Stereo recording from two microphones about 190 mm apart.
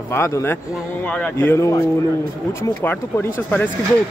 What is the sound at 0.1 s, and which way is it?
Speech, 15° left (ahead or behind).